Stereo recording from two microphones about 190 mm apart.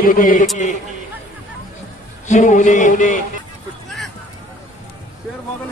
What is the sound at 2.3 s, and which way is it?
Speech, 40° left (ahead or behind).